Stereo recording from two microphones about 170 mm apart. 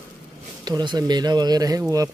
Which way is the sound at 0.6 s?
25° right (ahead or behind).